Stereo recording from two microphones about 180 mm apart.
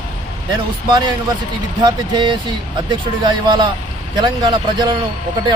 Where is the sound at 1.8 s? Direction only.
25° right (ahead or behind).